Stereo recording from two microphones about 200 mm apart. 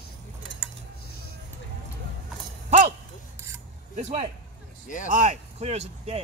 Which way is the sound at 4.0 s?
30° right (ahead or behind).